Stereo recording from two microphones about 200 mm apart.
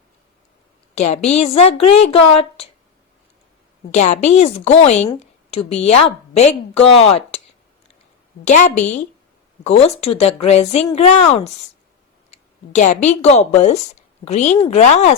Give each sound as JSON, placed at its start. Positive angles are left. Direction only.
{"t": 0.9, "sound": "a woman's voice", "side_deg": 35}
{"t": 3.9, "sound": "a woman's voice", "side_deg": 35}
{"t": 8.4, "sound": "a woman's voice", "side_deg": 35}